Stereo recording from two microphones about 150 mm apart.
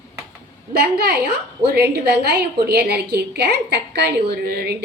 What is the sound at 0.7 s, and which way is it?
A woman's voice, 90° right.